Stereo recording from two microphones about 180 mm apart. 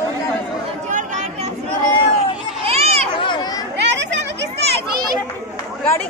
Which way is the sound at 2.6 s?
35° right (ahead or behind).